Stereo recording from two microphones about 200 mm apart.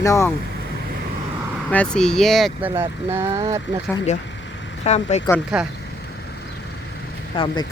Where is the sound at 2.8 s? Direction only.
10° right (ahead or behind).